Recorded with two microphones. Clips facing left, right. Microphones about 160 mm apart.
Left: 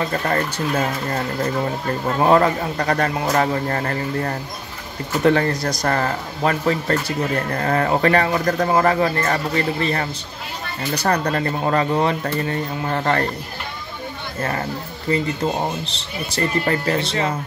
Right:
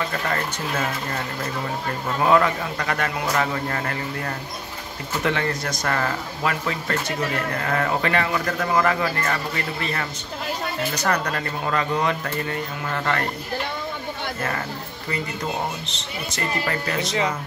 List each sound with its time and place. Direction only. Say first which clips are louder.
0.1 s speech: left 5 dB; 35° left (ahead or behind)
2.1 s speech: left 3 dB; 35° left (ahead or behind)
15.0 s speech: left 7 dB; 30° left (ahead or behind)